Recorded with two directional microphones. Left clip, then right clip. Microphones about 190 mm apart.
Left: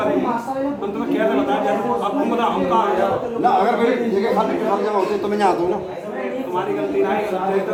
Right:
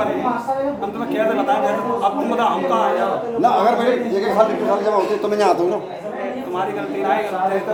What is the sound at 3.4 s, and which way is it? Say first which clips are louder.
Speech: right 1 dB; 55° right (ahead or behind).